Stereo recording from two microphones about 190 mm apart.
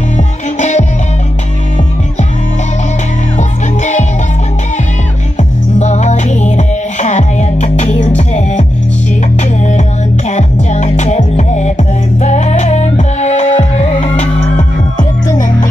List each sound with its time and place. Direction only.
0.6 s music: 40° left (ahead or behind)
3.3 s music: 40° left (ahead or behind)
5.8 s music: 35° left (ahead or behind)